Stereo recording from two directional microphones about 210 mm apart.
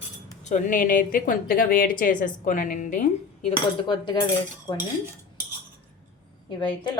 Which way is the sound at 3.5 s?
20° left (ahead or behind).